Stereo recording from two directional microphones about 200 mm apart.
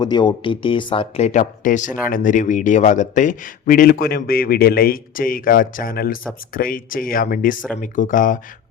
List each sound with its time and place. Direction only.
0.0 s speech: 20° left (ahead or behind); by 8.4 s 40° left (ahead or behind)